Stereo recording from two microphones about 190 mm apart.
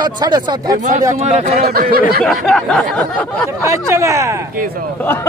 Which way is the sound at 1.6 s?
50° right (ahead or behind).